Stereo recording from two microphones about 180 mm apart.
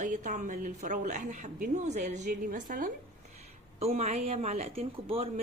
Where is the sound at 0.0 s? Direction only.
45° right (ahead or behind).